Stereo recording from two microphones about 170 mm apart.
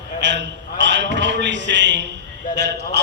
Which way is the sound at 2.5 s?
85° right.